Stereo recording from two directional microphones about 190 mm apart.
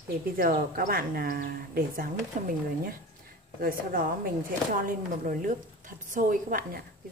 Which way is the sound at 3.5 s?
50° right (ahead or behind).